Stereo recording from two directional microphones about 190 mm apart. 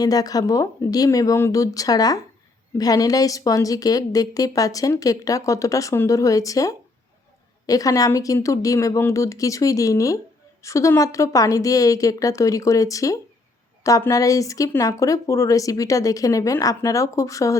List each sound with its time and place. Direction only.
0.0 s a woman's voice: 20° left (ahead or behind)